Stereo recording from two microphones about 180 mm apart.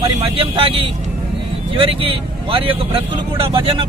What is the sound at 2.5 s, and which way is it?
A man's voice, 30° right (ahead or behind).